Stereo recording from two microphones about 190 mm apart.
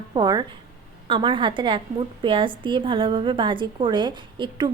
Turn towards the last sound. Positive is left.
turn(degrees=-25)  # may be behind; listen again after turning